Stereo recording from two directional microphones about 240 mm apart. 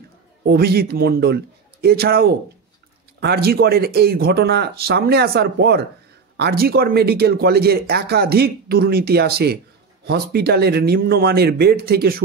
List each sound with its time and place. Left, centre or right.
0.5 s speech: right